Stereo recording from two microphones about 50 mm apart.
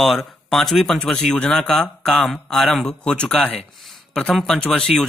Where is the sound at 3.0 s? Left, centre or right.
Centre.